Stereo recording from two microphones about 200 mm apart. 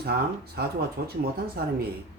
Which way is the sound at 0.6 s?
55° right (ahead or behind).